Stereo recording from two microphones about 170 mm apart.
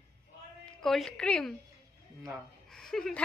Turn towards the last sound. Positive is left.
turn(degrees=5)  # may be behind; listen again after turning